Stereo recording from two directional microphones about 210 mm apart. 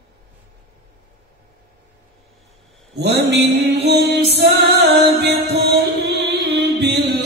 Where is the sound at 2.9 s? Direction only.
55° right (ahead or behind).